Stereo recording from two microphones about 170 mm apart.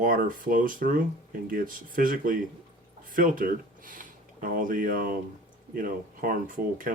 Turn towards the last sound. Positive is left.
turn(degrees=-55)  # may be behind; listen again after turning